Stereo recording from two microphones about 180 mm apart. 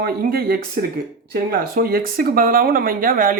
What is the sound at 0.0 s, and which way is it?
Speech, 60° right (ahead or behind).